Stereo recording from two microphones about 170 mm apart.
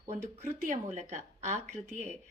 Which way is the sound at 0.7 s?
45° right (ahead or behind).